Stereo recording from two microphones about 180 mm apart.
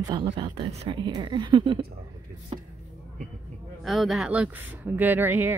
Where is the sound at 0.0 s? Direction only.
20° right (ahead or behind).